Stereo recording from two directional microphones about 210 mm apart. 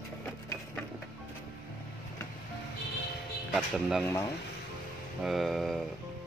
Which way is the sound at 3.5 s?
Centre (ahead or behind).